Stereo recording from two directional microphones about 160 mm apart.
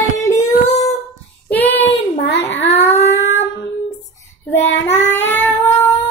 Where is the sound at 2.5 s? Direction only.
10° left (ahead or behind).